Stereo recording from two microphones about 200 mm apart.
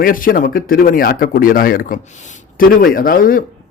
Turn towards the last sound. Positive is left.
turn(degrees=45)  # may be behind; listen again after turning